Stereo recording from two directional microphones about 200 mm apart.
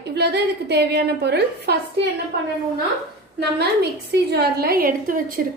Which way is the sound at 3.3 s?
55° right (ahead or behind).